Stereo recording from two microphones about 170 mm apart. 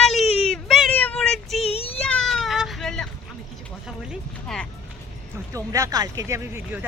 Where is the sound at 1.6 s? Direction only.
35° left (ahead or behind).